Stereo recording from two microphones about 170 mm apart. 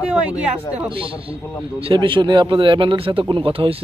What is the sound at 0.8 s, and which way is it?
A man's voice, 30° right (ahead or behind).